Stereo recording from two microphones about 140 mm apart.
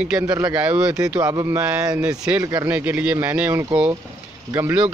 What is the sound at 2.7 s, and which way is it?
A man's voice, 10° right (ahead or behind).